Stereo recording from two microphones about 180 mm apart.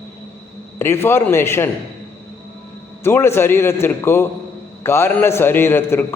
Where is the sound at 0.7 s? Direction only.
15° left (ahead or behind).